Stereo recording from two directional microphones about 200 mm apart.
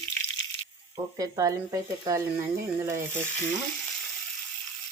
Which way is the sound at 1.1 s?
15° right (ahead or behind).